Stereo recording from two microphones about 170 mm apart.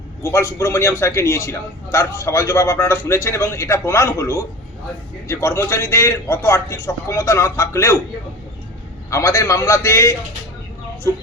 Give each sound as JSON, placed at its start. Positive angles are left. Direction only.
{"t": 0.2, "sound": "a man's voice", "side_deg": 15}
{"t": 9.0, "sound": "a man's voice", "side_deg": 15}